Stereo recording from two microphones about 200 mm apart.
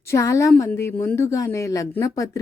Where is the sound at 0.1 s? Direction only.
15° left (ahead or behind).